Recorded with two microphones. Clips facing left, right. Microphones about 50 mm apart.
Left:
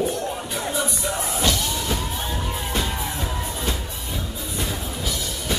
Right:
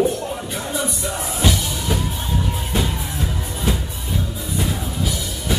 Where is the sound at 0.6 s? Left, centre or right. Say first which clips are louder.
Even; centre.